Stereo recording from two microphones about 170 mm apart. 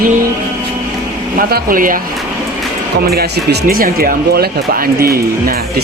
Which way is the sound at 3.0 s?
65° right (ahead or behind).